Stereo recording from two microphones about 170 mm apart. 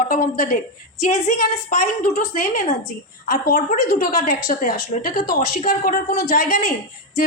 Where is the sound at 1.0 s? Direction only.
40° left (ahead or behind).